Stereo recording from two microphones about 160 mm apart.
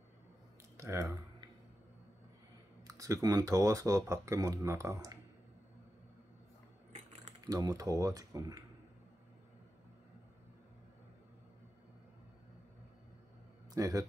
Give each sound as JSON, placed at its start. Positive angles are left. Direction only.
{"t": 0.7, "sound": "typing", "side_deg": -20}
{"t": 2.9, "sound": "speech", "side_deg": -20}
{"t": 7.4, "sound": "speech", "side_deg": -25}
{"t": 13.7, "sound": "speech", "side_deg": -20}